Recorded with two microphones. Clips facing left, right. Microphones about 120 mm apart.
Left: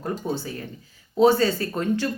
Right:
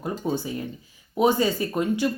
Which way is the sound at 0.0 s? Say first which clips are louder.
Right 1 dB; 15° right (ahead or behind).